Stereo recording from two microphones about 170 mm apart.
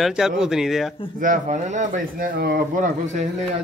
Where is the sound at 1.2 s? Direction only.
50° right (ahead or behind).